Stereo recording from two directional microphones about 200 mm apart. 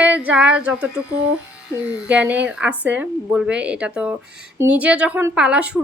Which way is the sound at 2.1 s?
5° right (ahead or behind).